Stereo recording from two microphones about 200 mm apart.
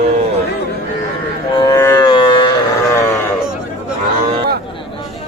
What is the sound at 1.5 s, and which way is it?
Livestock, 20° left (ahead or behind).